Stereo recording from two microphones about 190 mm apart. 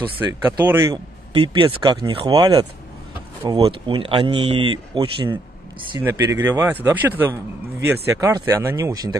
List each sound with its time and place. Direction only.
0.0 s speech: 15° right (ahead or behind)
1.3 s speech: 25° right (ahead or behind)
6.0 s speech: 15° right (ahead or behind)